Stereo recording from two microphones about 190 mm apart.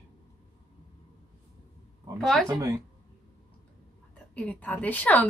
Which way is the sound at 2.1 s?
20° right (ahead or behind).